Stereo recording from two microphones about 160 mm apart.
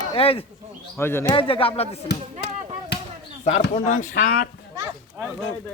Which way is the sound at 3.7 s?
55° left (ahead or behind).